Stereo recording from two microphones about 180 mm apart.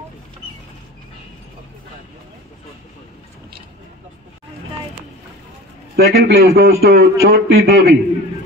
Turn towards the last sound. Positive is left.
turn(degrees=-60)  # may be behind; listen again after turning